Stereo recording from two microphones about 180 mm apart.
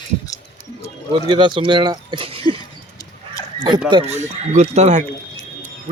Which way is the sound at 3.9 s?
40° right (ahead or behind).